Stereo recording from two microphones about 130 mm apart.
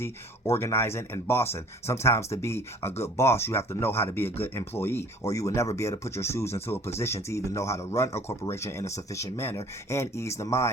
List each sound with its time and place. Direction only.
0.0 s speech: 20° left (ahead or behind)